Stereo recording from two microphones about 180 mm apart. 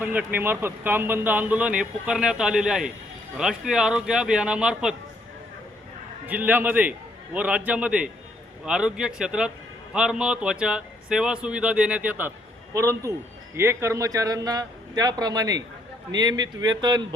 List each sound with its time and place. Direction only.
0.0 s a man's voice: 10° right (ahead or behind)
6.2 s a man's voice: 10° right (ahead or behind)